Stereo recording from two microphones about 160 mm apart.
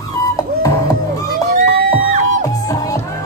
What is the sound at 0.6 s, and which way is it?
Music, 20° left (ahead or behind).